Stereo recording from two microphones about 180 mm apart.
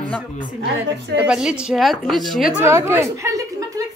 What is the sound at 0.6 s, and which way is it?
Speech, 65° right (ahead or behind).